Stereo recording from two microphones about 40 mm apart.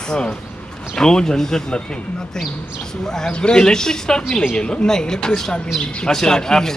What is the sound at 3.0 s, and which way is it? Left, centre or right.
Speech, centre.